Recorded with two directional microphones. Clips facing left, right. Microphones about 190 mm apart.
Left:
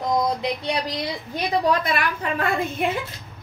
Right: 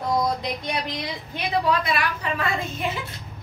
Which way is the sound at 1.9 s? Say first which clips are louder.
Left 1 dB; 55° left (ahead or behind).